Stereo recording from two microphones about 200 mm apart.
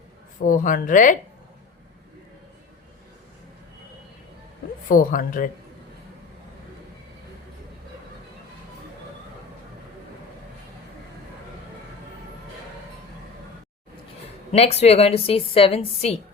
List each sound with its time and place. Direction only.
0.4 s a woman's voice: 40° left (ahead or behind)
4.9 s speech: 45° left (ahead or behind)
14.5 s a woman's voice: 30° left (ahead or behind)